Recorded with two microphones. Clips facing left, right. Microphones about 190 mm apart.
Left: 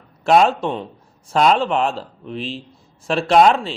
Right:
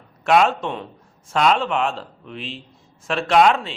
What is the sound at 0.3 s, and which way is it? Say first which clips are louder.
A man's voice: left 3 dB; 35° left (ahead or behind).